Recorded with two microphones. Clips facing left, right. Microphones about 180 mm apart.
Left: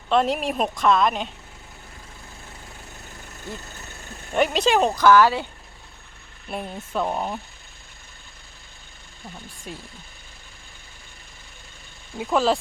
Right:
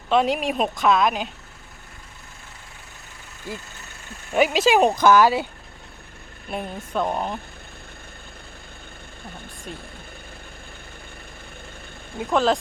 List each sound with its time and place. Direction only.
0.1 s a woman's voice: centre (ahead or behind)
4.4 s a woman's voice: 5° right (ahead or behind)
4.8 s speech: 20° right (ahead or behind)
6.5 s a woman's voice: centre (ahead or behind)
12.2 s a woman's voice: centre (ahead or behind)